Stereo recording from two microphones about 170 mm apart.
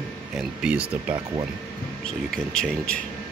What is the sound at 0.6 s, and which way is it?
Speech, 5° right (ahead or behind).